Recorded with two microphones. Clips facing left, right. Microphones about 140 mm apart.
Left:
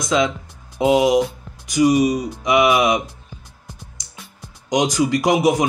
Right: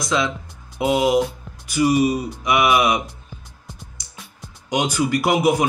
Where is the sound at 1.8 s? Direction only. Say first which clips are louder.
Left 2 dB; 20° left (ahead or behind).